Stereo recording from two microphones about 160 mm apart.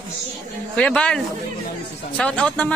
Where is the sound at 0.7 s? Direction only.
5° left (ahead or behind).